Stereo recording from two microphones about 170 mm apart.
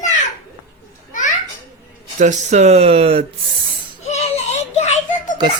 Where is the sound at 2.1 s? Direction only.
45° right (ahead or behind).